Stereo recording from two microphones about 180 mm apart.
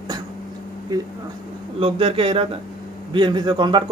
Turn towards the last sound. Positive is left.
turn(degrees=-25)  # may be behind; listen again after turning